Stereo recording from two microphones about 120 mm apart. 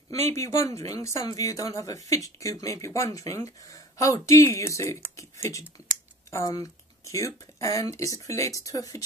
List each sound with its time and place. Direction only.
0.3 s speech: 25° left (ahead or behind)